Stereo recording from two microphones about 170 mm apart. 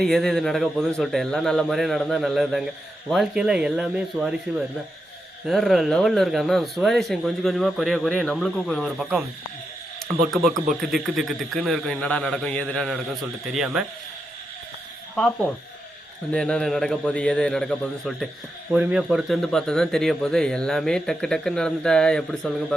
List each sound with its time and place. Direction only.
0.0 s speech: 5° left (ahead or behind)
5.5 s speech: centre (ahead or behind)
10.4 s speech: 50° right (ahead or behind)
10.8 s speech: centre (ahead or behind)
16.3 s speech: 5° left (ahead or behind)